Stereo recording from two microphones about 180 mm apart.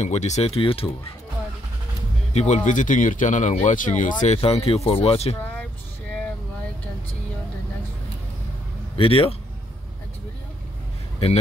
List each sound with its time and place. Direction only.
0.0 s speech: 40° left (ahead or behind)
2.3 s speech: 40° left (ahead or behind)
8.9 s a man's voice: 30° left (ahead or behind)